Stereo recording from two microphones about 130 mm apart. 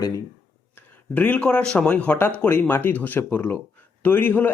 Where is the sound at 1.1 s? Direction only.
10° left (ahead or behind).